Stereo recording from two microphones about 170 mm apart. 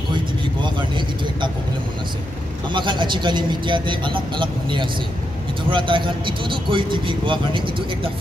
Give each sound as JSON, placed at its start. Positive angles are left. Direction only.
{"t": 0.1, "sound": "vehicle", "side_deg": -30}
{"t": 2.7, "sound": "speech", "side_deg": -30}